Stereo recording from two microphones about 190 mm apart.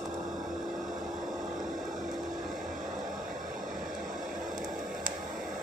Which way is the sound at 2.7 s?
40° right (ahead or behind).